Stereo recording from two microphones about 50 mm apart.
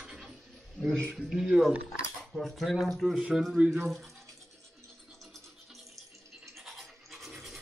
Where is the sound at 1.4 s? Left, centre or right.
Centre.